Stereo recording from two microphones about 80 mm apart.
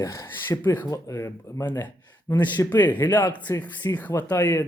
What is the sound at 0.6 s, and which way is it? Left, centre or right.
Speech, left.